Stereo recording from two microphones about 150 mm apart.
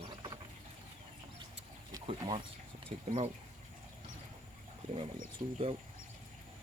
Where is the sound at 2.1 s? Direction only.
35° right (ahead or behind).